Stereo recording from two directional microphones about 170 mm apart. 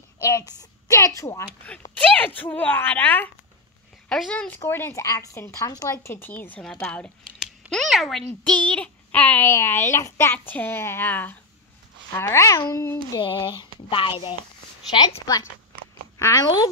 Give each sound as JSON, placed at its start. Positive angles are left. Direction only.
{"t": 0.2, "sound": "a woman's voice", "side_deg": 20}
{"t": 2.0, "sound": "a woman's voice", "side_deg": 10}
{"t": 6.8, "sound": "a sound", "side_deg": 5}
{"t": 7.6, "sound": "a woman's voice", "side_deg": 0}
{"t": 13.2, "sound": "speech", "side_deg": 30}
{"t": 16.2, "sound": "speech", "side_deg": 20}